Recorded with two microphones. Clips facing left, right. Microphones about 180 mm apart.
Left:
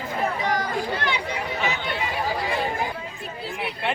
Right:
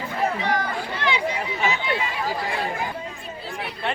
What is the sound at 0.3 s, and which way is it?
Chatter, 45° left (ahead or behind).